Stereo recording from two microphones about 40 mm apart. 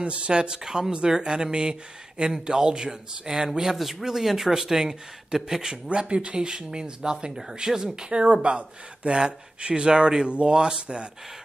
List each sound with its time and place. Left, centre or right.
0.0 s speech: right; by 5.8 s centre
5.9 s speech: right